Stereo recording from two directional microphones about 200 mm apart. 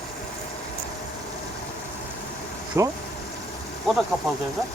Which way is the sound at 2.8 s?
15° right (ahead or behind).